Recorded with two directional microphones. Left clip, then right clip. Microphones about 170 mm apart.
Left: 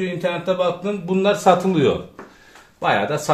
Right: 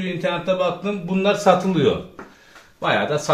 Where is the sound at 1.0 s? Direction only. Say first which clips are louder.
Left 1 dB; 35° left (ahead or behind).